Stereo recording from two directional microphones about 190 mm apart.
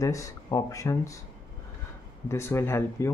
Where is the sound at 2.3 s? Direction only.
15° left (ahead or behind).